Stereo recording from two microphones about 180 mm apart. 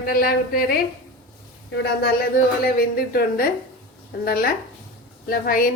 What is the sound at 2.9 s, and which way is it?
A woman's voice, 55° left (ahead or behind).